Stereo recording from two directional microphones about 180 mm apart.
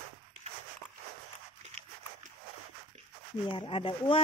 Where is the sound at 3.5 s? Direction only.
30° left (ahead or behind).